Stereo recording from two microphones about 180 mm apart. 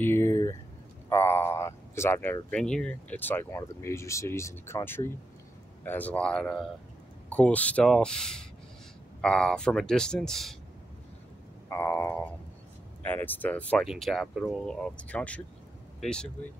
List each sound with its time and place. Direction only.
0.0 s a sound: 15° left (ahead or behind)
2.5 s speech: 5° left (ahead or behind)
11.7 s speech: 10° left (ahead or behind)